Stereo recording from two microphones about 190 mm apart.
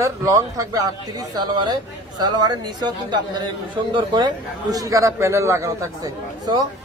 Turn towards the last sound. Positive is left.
turn(degrees=-20)  # may be behind; listen again after turning